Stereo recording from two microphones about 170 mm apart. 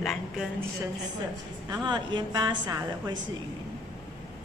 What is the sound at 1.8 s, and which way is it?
A woman's voice, 25° right (ahead or behind).